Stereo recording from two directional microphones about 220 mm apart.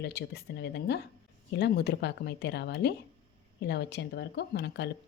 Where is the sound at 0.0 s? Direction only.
50° left (ahead or behind).